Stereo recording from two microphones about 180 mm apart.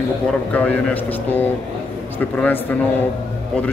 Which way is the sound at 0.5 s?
10° left (ahead or behind).